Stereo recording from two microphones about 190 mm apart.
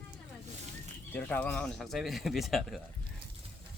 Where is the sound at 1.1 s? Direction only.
10° left (ahead or behind).